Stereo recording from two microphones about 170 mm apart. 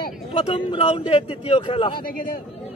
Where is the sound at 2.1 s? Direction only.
60° left (ahead or behind).